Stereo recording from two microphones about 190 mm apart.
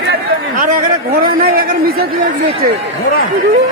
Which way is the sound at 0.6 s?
45° right (ahead or behind).